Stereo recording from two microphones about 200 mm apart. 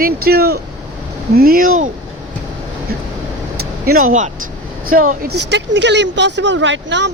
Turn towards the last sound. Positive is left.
turn(degrees=-65)  # may be behind; listen again after turning